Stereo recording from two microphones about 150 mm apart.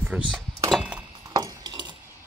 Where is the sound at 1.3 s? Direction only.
25° right (ahead or behind).